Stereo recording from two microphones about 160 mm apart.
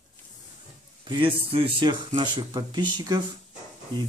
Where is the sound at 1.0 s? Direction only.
30° right (ahead or behind).